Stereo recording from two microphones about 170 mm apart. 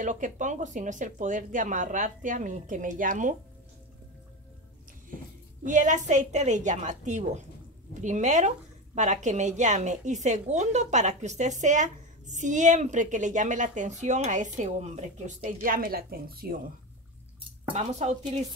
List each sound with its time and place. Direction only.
0.0 s speech: 50° right (ahead or behind)
5.7 s speech: 45° right (ahead or behind); by 16.5 s 60° right (ahead or behind)
17.7 s speech: 40° right (ahead or behind)